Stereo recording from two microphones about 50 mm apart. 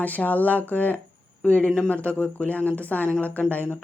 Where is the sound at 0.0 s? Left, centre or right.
Left.